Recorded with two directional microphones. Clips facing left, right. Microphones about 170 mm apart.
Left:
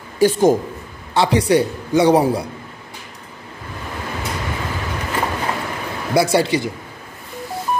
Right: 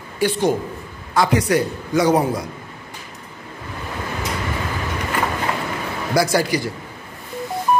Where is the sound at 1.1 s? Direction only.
30° left (ahead or behind).